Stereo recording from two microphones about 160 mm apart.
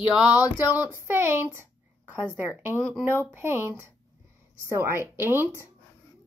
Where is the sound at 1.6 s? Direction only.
15° right (ahead or behind).